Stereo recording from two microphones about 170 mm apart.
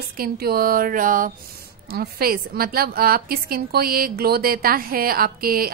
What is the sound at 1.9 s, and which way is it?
A woman's voice, 65° right (ahead or behind).